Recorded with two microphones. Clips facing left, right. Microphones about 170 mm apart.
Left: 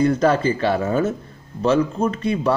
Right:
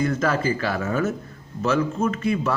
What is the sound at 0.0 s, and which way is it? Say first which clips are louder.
A man's voice: left 5 dB; 30° left (ahead or behind).